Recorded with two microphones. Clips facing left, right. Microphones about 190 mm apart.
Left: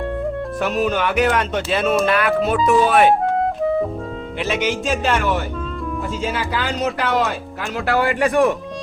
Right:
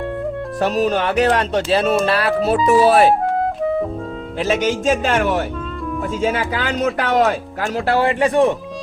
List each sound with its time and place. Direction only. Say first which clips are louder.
0.6 s speech: right 3 dB; 35° right (ahead or behind)
3.3 s music: even; centre (ahead or behind)
4.4 s speech: right 3 dB; 45° right (ahead or behind)
6.5 s speech: right 2 dB; 50° right (ahead or behind)
7.9 s speech: right 1 dB; 30° right (ahead or behind)